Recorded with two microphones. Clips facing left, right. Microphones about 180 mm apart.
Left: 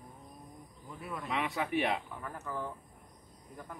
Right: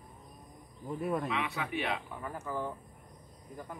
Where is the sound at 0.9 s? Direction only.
50° right (ahead or behind).